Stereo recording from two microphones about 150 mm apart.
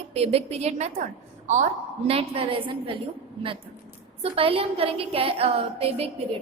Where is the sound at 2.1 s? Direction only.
40° right (ahead or behind).